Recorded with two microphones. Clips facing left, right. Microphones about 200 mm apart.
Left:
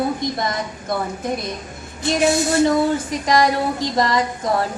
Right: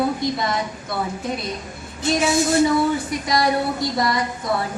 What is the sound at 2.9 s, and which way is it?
A woman's voice, 90° left.